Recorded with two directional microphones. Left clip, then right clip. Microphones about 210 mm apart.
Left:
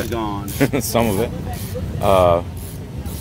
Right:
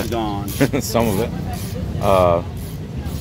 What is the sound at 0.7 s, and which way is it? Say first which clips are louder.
Speech: even; 20° left (ahead or behind).